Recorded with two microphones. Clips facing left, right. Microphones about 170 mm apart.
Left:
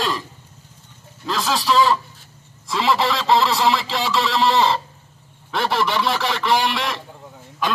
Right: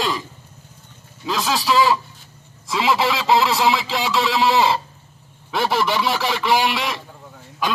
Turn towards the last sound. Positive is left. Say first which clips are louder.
# even
turn(degrees=0)  # may be behind; listen again after turning